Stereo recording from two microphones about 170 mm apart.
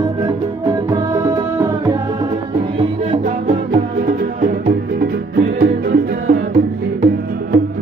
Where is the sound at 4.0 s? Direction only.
55° right (ahead or behind).